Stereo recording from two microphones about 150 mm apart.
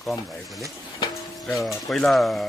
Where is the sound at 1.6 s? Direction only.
Centre (ahead or behind).